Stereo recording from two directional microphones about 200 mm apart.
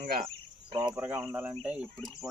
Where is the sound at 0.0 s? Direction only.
45° right (ahead or behind).